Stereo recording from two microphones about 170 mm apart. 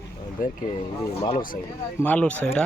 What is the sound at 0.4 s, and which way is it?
Speech, 55° left (ahead or behind).